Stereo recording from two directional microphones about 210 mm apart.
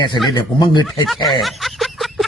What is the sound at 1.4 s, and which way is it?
Snicker, centre (ahead or behind).